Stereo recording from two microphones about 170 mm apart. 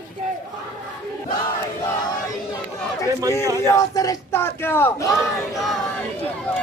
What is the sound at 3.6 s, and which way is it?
A man's voice, 20° left (ahead or behind).